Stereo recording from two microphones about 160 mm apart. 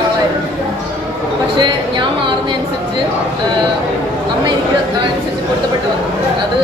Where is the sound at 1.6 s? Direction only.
30° right (ahead or behind).